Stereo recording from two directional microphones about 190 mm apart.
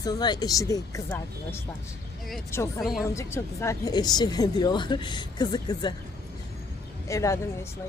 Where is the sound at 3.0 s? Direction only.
15° left (ahead or behind).